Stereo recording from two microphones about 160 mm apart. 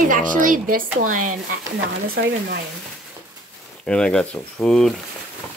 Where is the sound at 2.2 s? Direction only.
90° right.